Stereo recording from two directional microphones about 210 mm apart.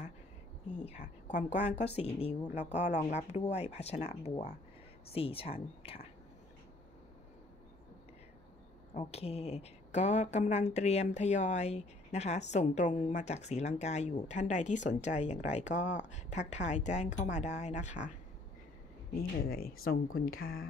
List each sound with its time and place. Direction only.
0.9 s speech: 35° left (ahead or behind)
8.9 s speech: 30° left (ahead or behind)
19.1 s speech: 45° left (ahead or behind)